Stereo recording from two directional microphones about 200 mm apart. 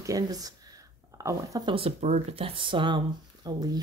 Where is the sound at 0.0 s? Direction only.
15° right (ahead or behind).